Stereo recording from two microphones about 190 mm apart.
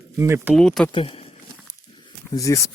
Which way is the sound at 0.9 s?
30° left (ahead or behind).